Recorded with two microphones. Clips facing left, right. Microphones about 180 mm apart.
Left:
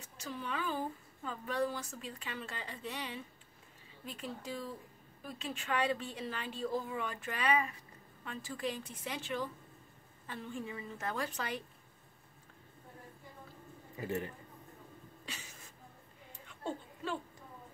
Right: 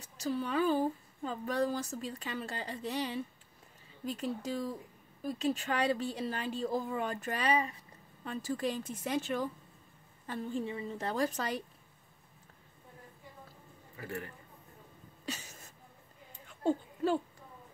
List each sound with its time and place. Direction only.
0.0 s a woman's voice: 35° right (ahead or behind)
13.9 s speech: 20° left (ahead or behind)
15.2 s a sound: 40° right (ahead or behind)
16.6 s speech: 40° right (ahead or behind)